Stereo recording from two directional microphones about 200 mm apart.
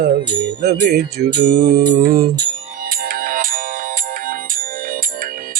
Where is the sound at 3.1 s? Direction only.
45° right (ahead or behind).